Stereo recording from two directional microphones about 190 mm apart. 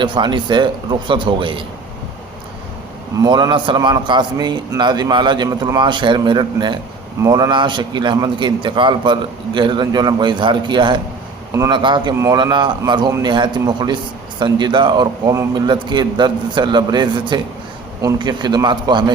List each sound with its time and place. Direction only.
0.0 s a man's voice: 25° right (ahead or behind)
3.2 s a man's voice: 20° right (ahead or behind)